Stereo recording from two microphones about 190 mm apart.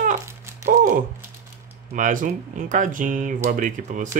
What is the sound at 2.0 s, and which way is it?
Speech, 45° right (ahead or behind).